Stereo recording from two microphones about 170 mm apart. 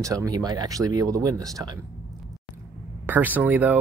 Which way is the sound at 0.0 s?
20° right (ahead or behind).